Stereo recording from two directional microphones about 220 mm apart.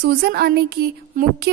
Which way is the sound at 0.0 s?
45° right (ahead or behind).